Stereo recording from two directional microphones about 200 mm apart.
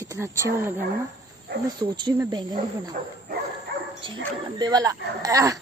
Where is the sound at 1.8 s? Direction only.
20° right (ahead or behind).